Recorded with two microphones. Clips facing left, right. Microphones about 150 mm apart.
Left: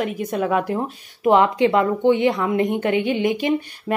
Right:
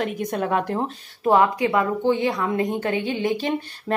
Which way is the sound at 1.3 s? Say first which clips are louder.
Left 3 dB; 25° left (ahead or behind).